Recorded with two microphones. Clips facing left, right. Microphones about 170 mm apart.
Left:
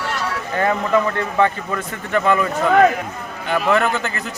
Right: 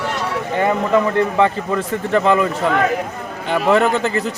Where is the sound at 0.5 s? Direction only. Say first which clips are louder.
Right 2 dB; 20° right (ahead or behind).